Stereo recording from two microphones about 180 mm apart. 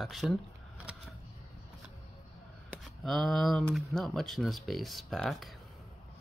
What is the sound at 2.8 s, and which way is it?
Speech, centre (ahead or behind).